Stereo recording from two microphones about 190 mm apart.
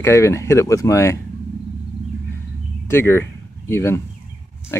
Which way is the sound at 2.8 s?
10° left (ahead or behind).